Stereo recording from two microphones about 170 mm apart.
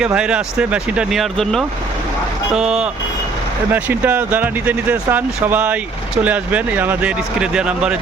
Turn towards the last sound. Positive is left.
turn(degrees=-5)  # may be behind; listen again after turning